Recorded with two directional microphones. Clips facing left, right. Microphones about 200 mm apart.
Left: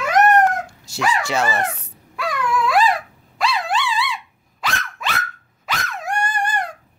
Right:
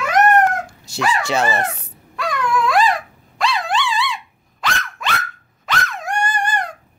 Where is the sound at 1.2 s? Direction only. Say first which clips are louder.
Right 2 dB; 20° right (ahead or behind).